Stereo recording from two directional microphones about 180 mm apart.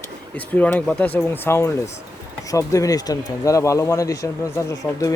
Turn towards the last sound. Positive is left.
turn(degrees=15)  # may be behind; listen again after turning